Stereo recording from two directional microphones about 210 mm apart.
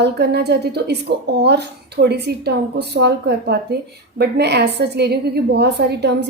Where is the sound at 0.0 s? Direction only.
50° right (ahead or behind).